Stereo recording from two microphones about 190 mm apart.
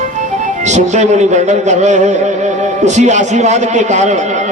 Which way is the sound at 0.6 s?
40° right (ahead or behind).